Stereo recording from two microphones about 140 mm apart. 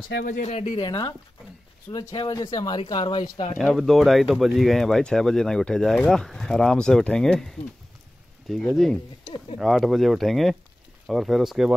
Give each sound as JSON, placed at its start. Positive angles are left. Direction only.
{"t": 0.2, "sound": "speech", "side_deg": 65}
{"t": 0.7, "sound": "speech", "side_deg": 35}
{"t": 3.5, "sound": "speech", "side_deg": 0}